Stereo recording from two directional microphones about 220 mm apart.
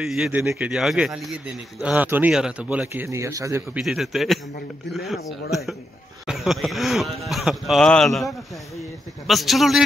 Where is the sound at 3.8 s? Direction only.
Centre (ahead or behind).